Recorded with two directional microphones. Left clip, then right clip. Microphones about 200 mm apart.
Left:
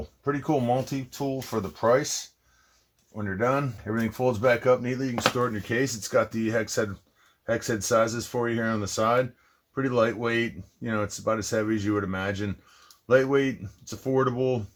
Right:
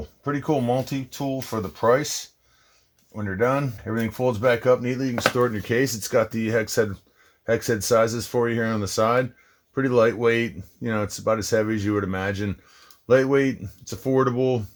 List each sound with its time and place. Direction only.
0.3 s speech: 30° right (ahead or behind)
3.2 s speech: 30° right (ahead or behind)